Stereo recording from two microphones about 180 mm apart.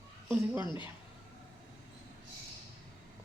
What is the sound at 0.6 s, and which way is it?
Speech, 25° left (ahead or behind).